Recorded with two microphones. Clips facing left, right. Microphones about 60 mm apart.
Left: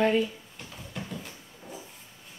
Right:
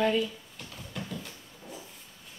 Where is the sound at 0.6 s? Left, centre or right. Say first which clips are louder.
Even; centre.